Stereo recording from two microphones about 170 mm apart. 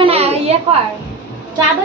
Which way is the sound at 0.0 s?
35° right (ahead or behind).